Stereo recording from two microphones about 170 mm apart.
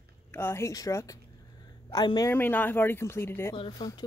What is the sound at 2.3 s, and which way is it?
Speech, 10° left (ahead or behind).